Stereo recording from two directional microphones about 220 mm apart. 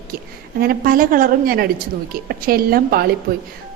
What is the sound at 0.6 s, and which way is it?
A woman's voice, 40° right (ahead or behind).